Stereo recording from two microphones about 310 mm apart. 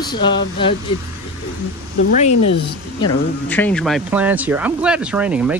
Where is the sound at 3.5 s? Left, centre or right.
Centre.